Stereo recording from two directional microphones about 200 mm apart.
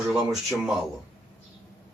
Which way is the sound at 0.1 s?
Centre (ahead or behind).